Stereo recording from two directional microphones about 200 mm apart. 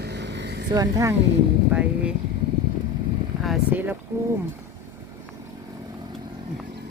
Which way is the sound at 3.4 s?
5° right (ahead or behind).